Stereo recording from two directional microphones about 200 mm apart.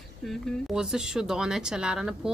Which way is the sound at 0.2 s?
Centre (ahead or behind).